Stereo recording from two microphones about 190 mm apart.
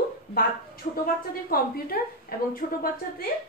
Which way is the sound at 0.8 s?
40° left (ahead or behind).